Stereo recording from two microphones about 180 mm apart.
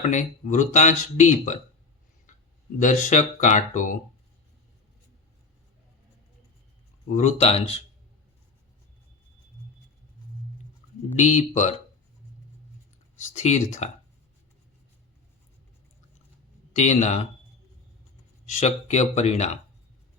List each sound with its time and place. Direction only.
0.1 s speech: 40° left (ahead or behind)
2.7 s speech: 45° left (ahead or behind)
7.1 s speech: 40° left (ahead or behind)
11.2 s speech: 40° left (ahead or behind)
13.3 s speech: 40° left (ahead or behind)
16.7 s speech: 40° left (ahead or behind)
18.6 s speech: 40° left (ahead or behind)